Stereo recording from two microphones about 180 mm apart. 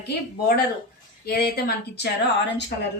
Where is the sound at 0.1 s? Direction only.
60° left (ahead or behind).